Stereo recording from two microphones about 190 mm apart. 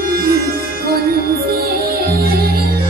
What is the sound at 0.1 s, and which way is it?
Music, 50° right (ahead or behind).